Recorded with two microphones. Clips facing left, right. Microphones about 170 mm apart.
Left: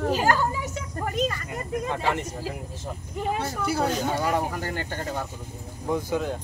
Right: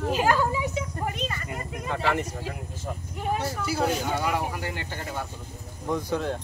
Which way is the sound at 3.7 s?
45° left (ahead or behind).